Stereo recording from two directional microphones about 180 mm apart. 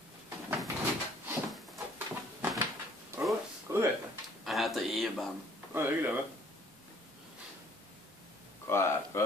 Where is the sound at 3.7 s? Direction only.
15° right (ahead or behind).